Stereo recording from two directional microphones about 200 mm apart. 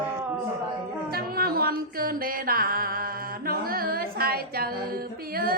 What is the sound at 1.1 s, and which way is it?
Music, 50° right (ahead or behind).